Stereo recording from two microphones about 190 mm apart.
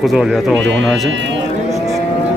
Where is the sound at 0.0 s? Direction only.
Centre (ahead or behind).